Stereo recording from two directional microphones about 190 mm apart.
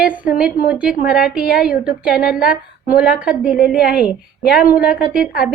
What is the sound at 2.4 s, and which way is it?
Speech, 50° left (ahead or behind).